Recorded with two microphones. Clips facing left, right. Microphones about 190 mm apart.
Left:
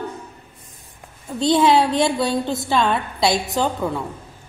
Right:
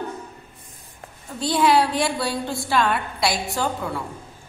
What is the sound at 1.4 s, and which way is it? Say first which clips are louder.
A woman's voice: left 3 dB; 25° left (ahead or behind).